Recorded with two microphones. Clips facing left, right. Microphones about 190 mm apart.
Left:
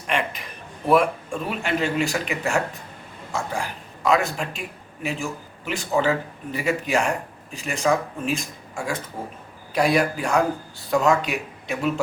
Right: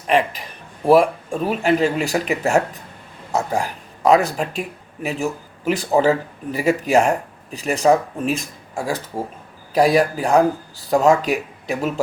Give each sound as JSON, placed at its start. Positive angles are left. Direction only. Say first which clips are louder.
{"t": 0.9, "sound": "speech", "louder": "right 5 dB", "side_deg": -35}